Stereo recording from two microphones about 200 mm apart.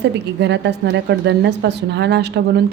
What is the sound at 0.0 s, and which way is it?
A woman's voice, 60° right (ahead or behind).